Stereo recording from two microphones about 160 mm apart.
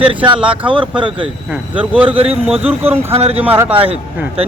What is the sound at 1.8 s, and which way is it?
Speech, 10° right (ahead or behind).